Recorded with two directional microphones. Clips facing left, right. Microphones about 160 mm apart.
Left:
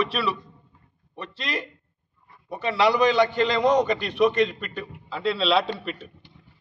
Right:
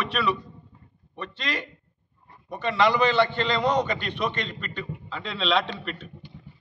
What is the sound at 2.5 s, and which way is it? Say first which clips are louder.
A man's voice: left 1 dB; 5° left (ahead or behind).